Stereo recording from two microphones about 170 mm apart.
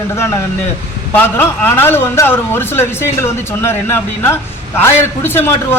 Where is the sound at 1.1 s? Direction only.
10° left (ahead or behind).